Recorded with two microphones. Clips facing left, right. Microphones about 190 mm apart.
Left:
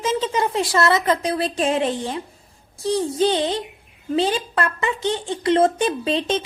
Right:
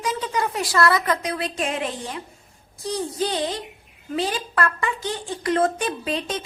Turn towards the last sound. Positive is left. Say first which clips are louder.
# left 5 dB
turn(degrees=25)  # may be behind; listen again after turning